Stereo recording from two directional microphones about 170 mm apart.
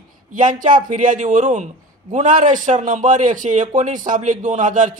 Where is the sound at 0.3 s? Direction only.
50° right (ahead or behind).